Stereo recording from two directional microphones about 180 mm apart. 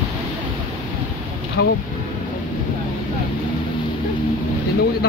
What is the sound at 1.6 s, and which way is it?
Speech, 90° left.